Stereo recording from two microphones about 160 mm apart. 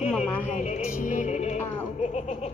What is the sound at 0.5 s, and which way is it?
Music, 45° left (ahead or behind).